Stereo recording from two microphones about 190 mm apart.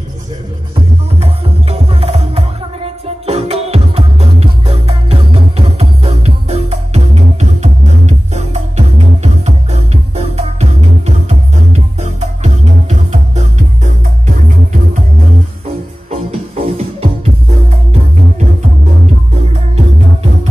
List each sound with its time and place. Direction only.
1.2 s music: 30° right (ahead or behind)
16.1 s music: 35° right (ahead or behind)